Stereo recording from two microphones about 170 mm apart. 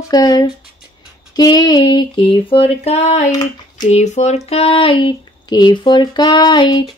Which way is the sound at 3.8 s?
45° left (ahead or behind).